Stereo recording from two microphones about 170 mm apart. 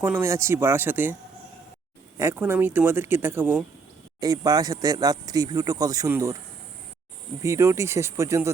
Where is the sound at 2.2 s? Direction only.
15° right (ahead or behind).